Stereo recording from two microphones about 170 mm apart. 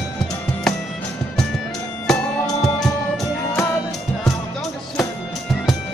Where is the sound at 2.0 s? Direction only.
Centre (ahead or behind).